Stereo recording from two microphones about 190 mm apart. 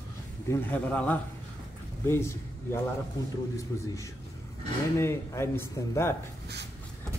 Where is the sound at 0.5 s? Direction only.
10° left (ahead or behind).